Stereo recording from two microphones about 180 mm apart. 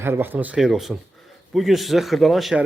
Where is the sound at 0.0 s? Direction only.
10° right (ahead or behind).